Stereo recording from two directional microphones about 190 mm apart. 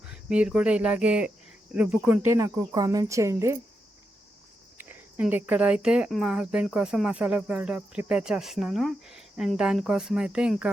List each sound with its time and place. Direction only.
0.0 s speech: 5° right (ahead or behind)
4.8 s speech: 10° right (ahead or behind)